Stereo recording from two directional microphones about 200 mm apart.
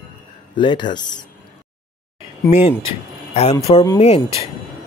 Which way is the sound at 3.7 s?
25° left (ahead or behind).